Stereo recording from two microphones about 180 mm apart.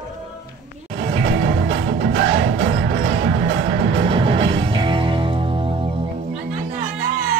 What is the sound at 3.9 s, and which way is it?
Music, 30° right (ahead or behind).